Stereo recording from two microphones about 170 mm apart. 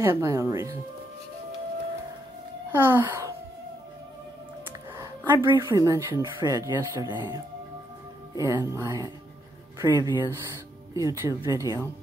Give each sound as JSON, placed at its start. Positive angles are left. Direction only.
{"t": 0.0, "sound": "speech", "side_deg": -15}
{"t": 2.7, "sound": "speech", "side_deg": -15}
{"t": 4.9, "sound": "a sound", "side_deg": -20}
{"t": 5.7, "sound": "speech", "side_deg": -20}
{"t": 8.4, "sound": "speech", "side_deg": -20}